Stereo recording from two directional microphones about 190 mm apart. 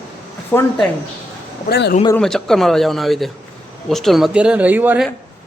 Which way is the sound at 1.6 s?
65° left (ahead or behind).